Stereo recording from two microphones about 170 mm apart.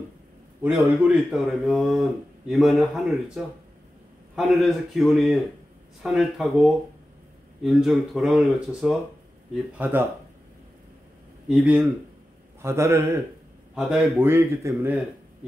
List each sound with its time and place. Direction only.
0.7 s a man's voice: 5° right (ahead or behind)
11.4 s a man's voice: 5° right (ahead or behind)